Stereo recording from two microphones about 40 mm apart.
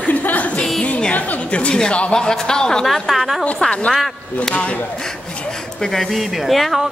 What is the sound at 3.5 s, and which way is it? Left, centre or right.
A woman's voice, left.